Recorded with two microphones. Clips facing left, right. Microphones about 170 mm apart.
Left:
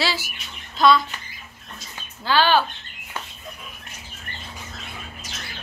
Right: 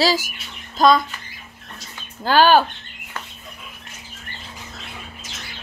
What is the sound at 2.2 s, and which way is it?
Speech, 45° right (ahead or behind).